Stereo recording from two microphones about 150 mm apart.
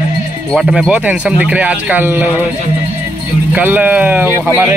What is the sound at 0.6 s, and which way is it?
Speech, centre (ahead or behind).